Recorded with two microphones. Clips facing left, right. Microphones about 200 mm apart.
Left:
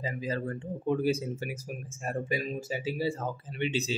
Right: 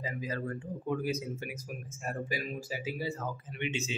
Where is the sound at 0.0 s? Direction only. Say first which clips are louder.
Left 3 dB; 30° left (ahead or behind).